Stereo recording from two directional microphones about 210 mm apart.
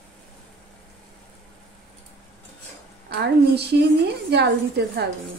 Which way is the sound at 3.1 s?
50° right (ahead or behind).